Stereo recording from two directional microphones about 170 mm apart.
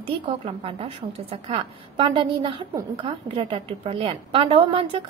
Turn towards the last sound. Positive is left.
turn(degrees=-30)  # may be behind; listen again after turning